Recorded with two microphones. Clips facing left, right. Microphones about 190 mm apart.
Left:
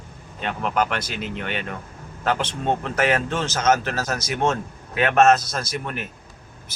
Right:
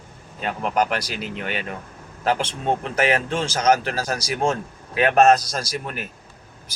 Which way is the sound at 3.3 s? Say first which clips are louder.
Right 1 dB; 30° right (ahead or behind).